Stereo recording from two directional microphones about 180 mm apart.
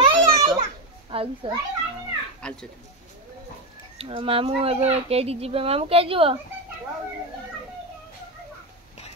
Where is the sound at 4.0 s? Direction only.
35° right (ahead or behind).